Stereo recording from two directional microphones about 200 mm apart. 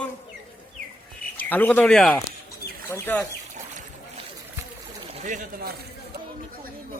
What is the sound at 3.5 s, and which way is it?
Boat, 40° right (ahead or behind).